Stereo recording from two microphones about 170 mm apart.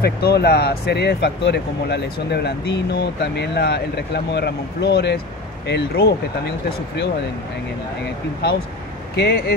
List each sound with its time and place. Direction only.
0.0 s speech: 70° left (ahead or behind)
9.1 s speech: 75° left (ahead or behind)